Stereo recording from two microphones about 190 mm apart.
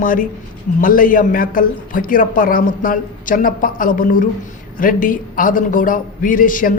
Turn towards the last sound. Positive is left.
turn(degrees=45)  # may be behind; listen again after turning